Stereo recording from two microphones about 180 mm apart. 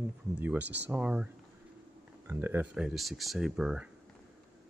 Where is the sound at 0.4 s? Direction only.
10° right (ahead or behind).